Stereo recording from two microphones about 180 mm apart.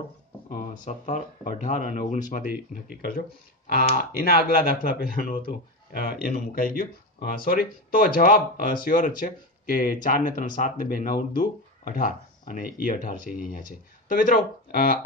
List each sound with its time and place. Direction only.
0.5 s speech: 45° left (ahead or behind)
4.2 s speech: 55° left (ahead or behind)